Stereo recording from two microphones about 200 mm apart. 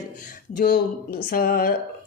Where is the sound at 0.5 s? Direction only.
50° left (ahead or behind).